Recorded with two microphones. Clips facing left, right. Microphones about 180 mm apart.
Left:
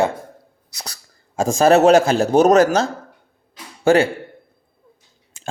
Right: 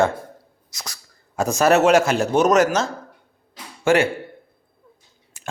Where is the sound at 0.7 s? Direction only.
35° left (ahead or behind).